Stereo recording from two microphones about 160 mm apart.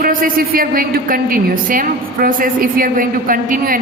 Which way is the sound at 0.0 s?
60° right (ahead or behind).